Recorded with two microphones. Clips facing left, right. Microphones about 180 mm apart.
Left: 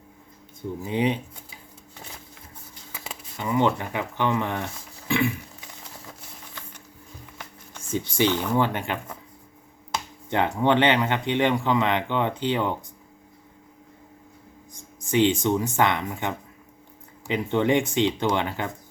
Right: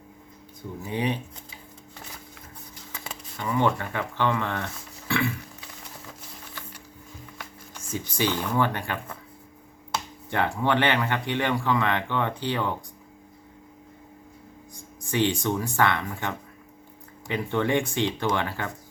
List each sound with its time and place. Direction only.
0.9 s speech: 20° left (ahead or behind)
2.9 s a sound: centre (ahead or behind)
3.3 s speech: 20° left (ahead or behind)
5.0 s a sound: 15° left (ahead or behind)
8.4 s speech: 15° left (ahead or behind)
10.2 s speech: 20° left (ahead or behind)
14.7 s speech: 20° left (ahead or behind)